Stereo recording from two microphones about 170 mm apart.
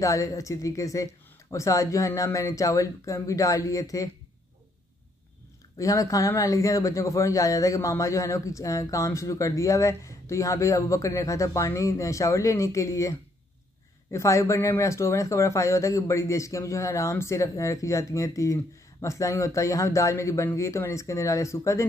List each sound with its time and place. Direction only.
0.0 s a man's voice: 20° left (ahead or behind)
5.8 s a man's voice: 20° left (ahead or behind)
14.1 s speech: 15° left (ahead or behind)